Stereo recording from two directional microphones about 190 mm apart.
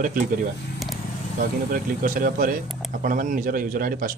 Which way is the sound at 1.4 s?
45° right (ahead or behind).